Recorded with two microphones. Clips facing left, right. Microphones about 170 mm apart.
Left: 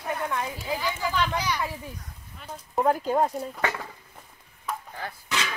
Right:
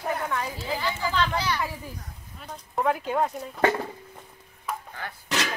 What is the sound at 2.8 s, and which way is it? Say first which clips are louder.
Speech: left 2 dB; 40° left (ahead or behind).